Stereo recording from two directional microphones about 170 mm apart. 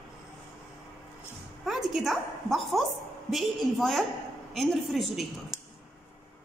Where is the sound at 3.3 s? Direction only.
Centre (ahead or behind).